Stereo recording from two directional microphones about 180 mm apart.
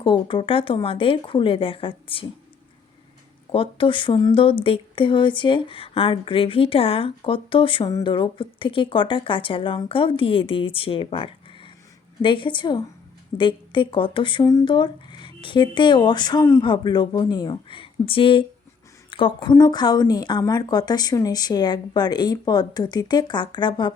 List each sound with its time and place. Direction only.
0.0 s speech: 30° left (ahead or behind)
3.5 s speech: 30° left (ahead or behind)